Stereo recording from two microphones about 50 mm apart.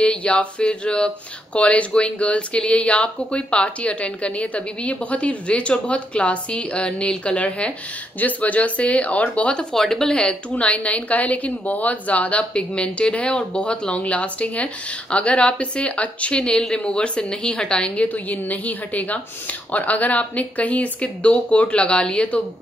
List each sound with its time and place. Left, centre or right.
0.0 s speech: left
9.8 s a woman's voice: centre
18.0 s a woman's voice: left